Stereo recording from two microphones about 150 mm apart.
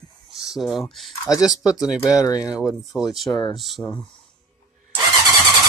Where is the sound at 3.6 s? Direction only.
Centre (ahead or behind).